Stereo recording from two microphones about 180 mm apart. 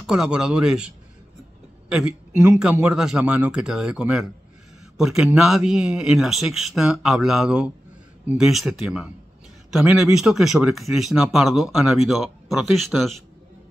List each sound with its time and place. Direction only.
0.0 s speech: 5° right (ahead or behind)
2.3 s speech: 15° right (ahead or behind); by 13.1 s centre (ahead or behind)